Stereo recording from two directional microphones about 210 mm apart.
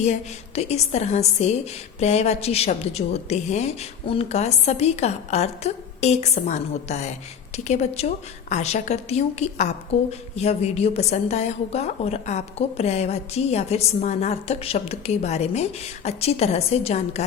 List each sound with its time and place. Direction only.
0.0 s a woman's voice: 30° left (ahead or behind)